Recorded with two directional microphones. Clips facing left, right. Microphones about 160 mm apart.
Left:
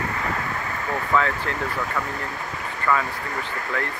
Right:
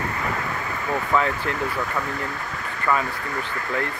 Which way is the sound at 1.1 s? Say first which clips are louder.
Even; 15° right (ahead or behind).